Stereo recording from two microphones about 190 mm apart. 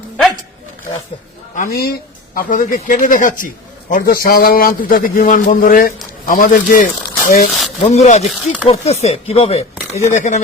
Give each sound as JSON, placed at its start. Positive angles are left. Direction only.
{"t": 1.5, "sound": "speech", "side_deg": 50}